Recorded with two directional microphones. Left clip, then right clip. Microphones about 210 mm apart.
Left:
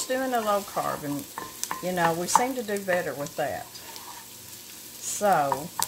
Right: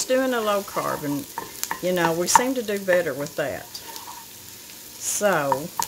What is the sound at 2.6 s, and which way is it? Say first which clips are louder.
Speech: right 5 dB; 45° right (ahead or behind).